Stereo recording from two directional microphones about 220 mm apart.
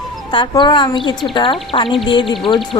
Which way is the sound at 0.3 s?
20° left (ahead or behind).